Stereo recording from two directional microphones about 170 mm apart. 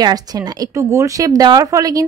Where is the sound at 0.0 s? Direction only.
20° right (ahead or behind).